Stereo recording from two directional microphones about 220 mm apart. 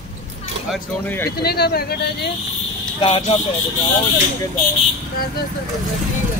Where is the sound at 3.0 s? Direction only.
25° left (ahead or behind).